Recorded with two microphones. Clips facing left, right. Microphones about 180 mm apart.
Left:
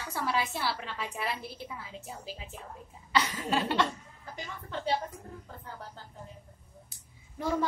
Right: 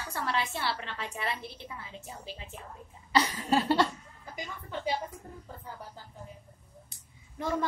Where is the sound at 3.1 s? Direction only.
35° right (ahead or behind).